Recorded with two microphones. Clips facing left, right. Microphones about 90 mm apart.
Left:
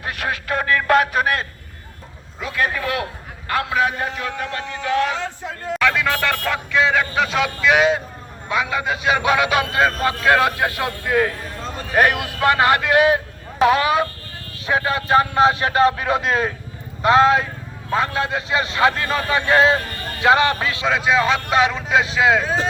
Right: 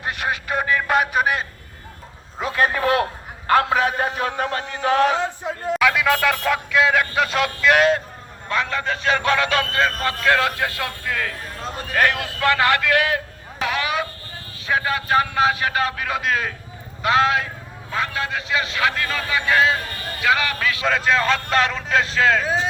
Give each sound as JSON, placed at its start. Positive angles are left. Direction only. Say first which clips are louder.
{"t": 0.0, "sound": "music", "louder": "even", "side_deg": -20}
{"t": 0.4, "sound": "speech", "louder": "left 4 dB", "side_deg": -10}
{"t": 2.4, "sound": "a man's voice", "louder": "right 2 dB", "side_deg": -35}
{"t": 5.1, "sound": "speech", "louder": "right 4 dB", "side_deg": -15}
{"t": 5.7, "sound": "a man's voice", "louder": "right 1 dB", "side_deg": -5}
{"t": 11.6, "sound": "a sound", "louder": "right 1 dB", "side_deg": -5}
{"t": 11.9, "sound": "a man's voice", "louder": "left 3 dB", "side_deg": 20}
{"t": 20.8, "sound": "speech", "louder": "left 2 dB", "side_deg": 5}